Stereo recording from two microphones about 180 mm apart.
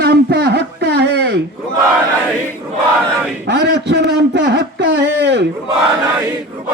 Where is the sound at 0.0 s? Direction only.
65° right (ahead or behind).